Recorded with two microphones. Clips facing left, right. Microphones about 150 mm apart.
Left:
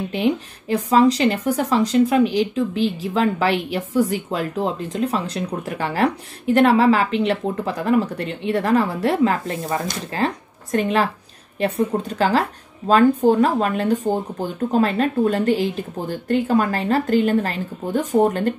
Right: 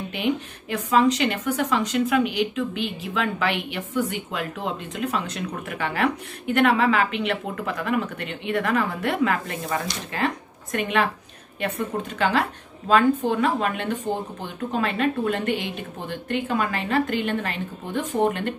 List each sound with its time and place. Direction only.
0.1 s speech: 35° left (ahead or behind)